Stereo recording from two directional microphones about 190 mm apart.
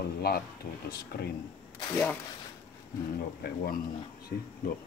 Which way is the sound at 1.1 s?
55° left (ahead or behind).